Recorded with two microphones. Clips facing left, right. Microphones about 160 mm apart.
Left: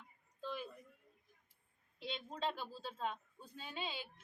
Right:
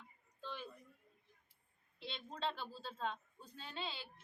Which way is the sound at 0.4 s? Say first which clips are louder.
Left 4 dB; 10° left (ahead or behind).